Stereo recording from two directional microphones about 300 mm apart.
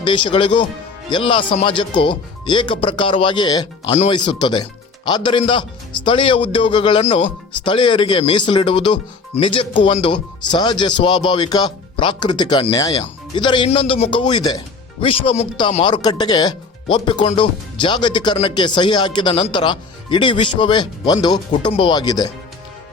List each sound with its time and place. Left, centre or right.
0.0 s speech: centre